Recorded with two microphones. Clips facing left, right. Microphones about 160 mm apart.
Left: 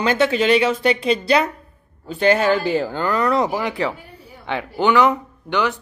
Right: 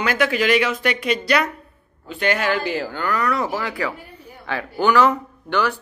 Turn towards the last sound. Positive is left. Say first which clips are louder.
# left 1 dB
turn(degrees=15)  # may be behind; listen again after turning